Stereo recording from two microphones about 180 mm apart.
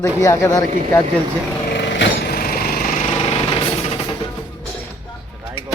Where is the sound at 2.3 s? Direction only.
55° left (ahead or behind).